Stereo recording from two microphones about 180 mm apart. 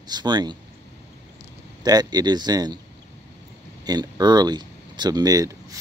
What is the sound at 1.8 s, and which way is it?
Speech, 20° right (ahead or behind).